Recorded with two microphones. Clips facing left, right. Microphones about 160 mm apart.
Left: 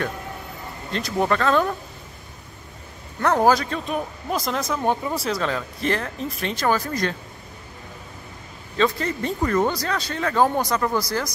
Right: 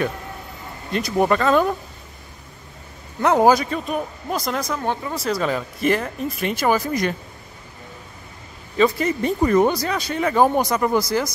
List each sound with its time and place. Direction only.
0.9 s speech: 15° right (ahead or behind)
3.2 s speech: 15° right (ahead or behind); by 5.2 s 15° left (ahead or behind)
5.2 s speech: 5° right (ahead or behind)
8.7 s speech: 10° right (ahead or behind)